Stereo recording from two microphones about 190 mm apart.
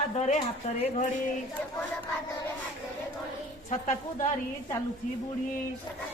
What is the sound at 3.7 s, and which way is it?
Speech, 40° left (ahead or behind).